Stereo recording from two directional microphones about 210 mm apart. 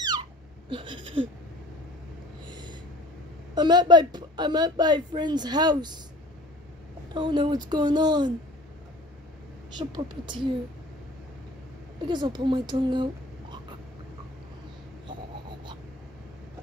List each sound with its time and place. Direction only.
0.7 s a sound: 25° right (ahead or behind)
2.5 s a sound: 20° right (ahead or behind)
3.5 s speech: 20° right (ahead or behind)
7.2 s speech: 20° right (ahead or behind)
9.8 s speech: 20° right (ahead or behind)
12.1 s a woman's voice: 20° right (ahead or behind)